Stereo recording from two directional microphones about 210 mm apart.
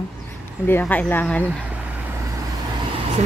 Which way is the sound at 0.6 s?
10° left (ahead or behind).